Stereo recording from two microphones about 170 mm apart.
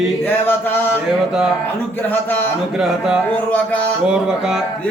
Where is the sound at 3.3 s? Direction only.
10° left (ahead or behind).